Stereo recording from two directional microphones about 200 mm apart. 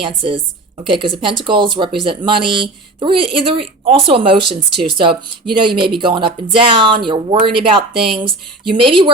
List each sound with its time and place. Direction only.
0.0 s speech: 25° right (ahead or behind)